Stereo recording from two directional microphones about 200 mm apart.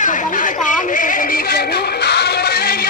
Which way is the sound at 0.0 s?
40° left (ahead or behind).